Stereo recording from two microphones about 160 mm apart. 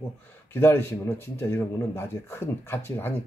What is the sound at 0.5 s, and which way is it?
A man's voice, 15° left (ahead or behind).